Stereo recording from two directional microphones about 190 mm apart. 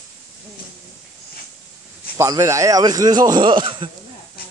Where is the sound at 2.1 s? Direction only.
15° right (ahead or behind).